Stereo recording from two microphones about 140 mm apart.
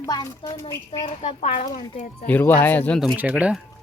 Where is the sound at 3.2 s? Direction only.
10° right (ahead or behind).